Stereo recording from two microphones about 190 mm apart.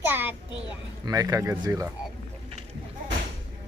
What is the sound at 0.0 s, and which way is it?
A child's voice, 10° right (ahead or behind).